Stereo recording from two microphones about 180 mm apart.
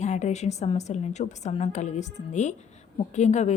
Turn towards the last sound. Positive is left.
turn(degrees=40)  # may be behind; listen again after turning